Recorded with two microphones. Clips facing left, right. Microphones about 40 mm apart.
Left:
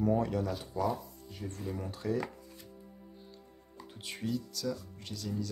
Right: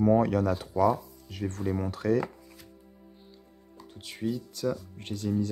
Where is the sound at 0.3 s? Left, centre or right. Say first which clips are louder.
Right 7 dB; right.